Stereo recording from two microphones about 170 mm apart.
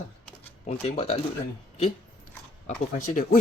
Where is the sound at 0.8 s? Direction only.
40° left (ahead or behind).